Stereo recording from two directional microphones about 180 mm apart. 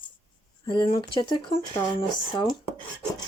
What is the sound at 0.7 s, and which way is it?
Speech, 25° left (ahead or behind).